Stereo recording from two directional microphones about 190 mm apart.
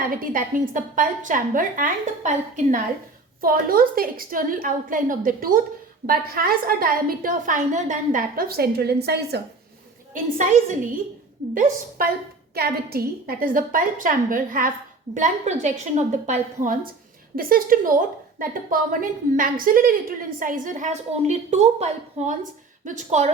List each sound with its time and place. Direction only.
0.3 s a woman's voice: 45° right (ahead or behind)
11.5 s a woman's voice: 45° right (ahead or behind)